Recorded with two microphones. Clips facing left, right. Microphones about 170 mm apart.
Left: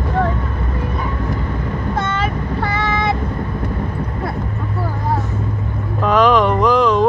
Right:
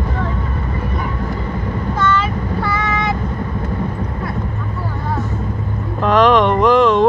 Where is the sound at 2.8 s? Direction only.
35° left (ahead or behind).